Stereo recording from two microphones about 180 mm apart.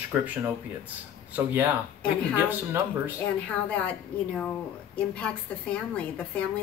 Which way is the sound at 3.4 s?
5° left (ahead or behind).